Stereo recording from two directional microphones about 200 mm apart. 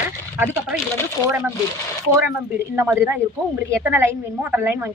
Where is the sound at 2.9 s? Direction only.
10° right (ahead or behind).